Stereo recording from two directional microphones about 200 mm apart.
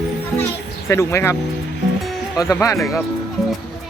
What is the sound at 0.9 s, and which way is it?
Speech, 15° left (ahead or behind).